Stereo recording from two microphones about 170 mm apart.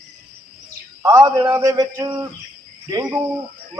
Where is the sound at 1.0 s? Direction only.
20° right (ahead or behind).